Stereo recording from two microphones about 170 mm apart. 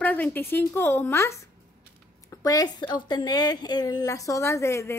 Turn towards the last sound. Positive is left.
turn(degrees=15)  # may be behind; listen again after turning